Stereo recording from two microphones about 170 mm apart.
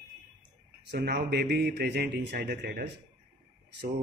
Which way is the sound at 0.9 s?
70° right (ahead or behind).